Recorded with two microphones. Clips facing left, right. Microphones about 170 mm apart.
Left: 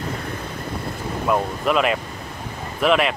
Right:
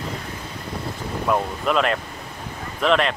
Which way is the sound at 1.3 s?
5° left (ahead or behind).